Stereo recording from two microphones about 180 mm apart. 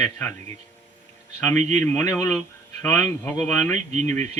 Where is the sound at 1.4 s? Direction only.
10° left (ahead or behind).